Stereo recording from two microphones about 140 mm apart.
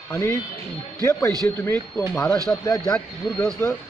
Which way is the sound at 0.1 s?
20° left (ahead or behind).